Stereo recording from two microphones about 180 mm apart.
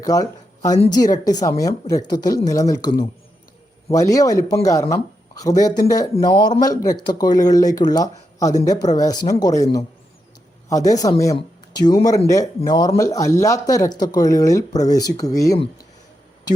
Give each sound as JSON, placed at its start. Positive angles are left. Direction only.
{"t": 0.0, "sound": "speech", "side_deg": 20}
{"t": 10.7, "sound": "speech", "side_deg": 20}